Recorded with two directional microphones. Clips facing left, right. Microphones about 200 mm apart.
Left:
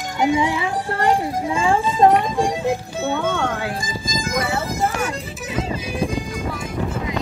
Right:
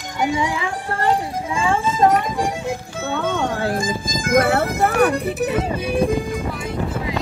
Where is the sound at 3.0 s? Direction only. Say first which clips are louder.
Left 1 dB; 15° left (ahead or behind).